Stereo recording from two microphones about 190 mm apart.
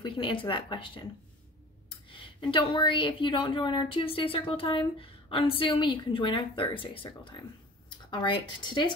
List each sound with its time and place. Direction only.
0.0 s a woman's voice: 25° left (ahead or behind)
2.0 s a woman's voice: 25° left (ahead or behind)